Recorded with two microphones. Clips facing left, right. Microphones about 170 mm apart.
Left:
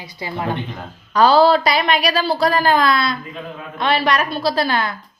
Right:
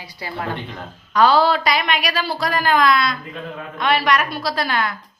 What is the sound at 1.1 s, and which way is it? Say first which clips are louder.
A woman's voice: left 3 dB; 35° left (ahead or behind).